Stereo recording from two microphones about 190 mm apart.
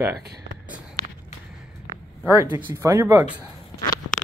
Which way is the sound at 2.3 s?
15° right (ahead or behind).